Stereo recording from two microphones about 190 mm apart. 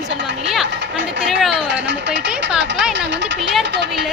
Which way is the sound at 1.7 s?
70° right (ahead or behind).